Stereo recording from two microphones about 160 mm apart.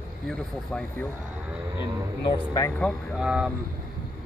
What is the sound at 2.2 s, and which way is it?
Speech, 25° left (ahead or behind).